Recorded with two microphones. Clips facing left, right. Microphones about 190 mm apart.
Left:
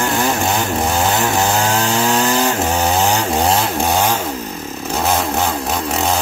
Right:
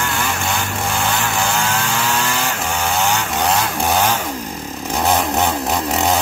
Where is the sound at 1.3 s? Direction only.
40° left (ahead or behind).